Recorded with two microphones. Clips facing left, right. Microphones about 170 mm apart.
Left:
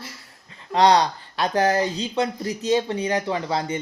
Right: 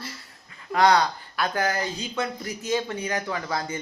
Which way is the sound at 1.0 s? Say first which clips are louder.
Left 3 dB; 30° left (ahead or behind).